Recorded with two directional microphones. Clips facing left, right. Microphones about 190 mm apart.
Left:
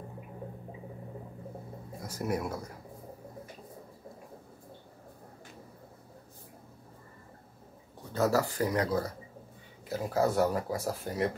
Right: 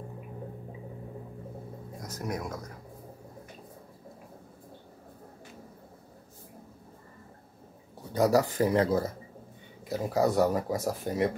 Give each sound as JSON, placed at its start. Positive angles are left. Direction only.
{"t": 2.0, "sound": "a man's voice", "side_deg": 10}
{"t": 8.1, "sound": "speech", "side_deg": -15}